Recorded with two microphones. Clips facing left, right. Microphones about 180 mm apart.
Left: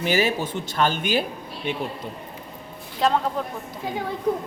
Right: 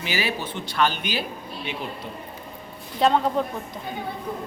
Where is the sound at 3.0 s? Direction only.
Centre (ahead or behind).